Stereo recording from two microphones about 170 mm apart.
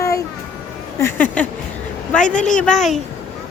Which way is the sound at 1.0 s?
10° left (ahead or behind).